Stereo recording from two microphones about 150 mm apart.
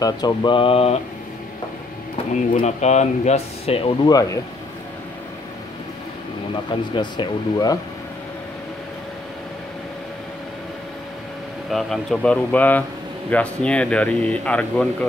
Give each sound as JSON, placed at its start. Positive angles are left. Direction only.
{"t": 0.0, "sound": "mantra", "side_deg": 25}
{"t": 2.6, "sound": "speech", "side_deg": 50}
{"t": 7.0, "sound": "speech", "side_deg": 30}
{"t": 11.7, "sound": "speech", "side_deg": 0}